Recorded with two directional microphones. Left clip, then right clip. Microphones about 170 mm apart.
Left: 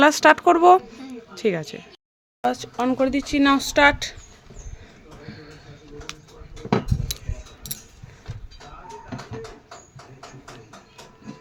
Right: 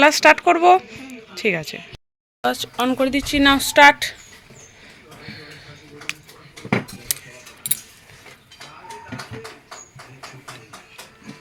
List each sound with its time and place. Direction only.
0.0 s speech: 20° left (ahead or behind)
2.4 s speech: 5° left (ahead or behind)
5.2 s a sound: 15° left (ahead or behind)